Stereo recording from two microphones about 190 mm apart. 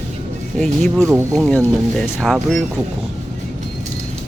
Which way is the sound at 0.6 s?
5° left (ahead or behind).